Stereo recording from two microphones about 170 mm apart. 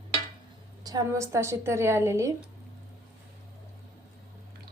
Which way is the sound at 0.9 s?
20° right (ahead or behind).